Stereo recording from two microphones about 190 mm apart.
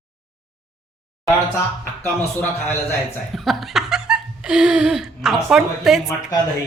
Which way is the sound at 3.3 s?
Centre (ahead or behind).